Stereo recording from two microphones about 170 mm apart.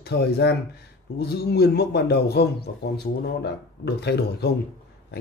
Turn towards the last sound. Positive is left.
turn(degrees=75)  # may be behind; listen again after turning